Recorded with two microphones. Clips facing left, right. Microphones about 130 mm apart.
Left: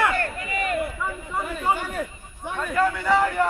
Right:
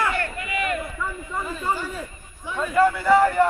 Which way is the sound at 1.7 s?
60° left (ahead or behind).